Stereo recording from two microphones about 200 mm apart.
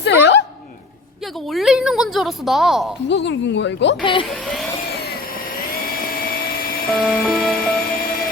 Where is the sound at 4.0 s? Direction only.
25° left (ahead or behind).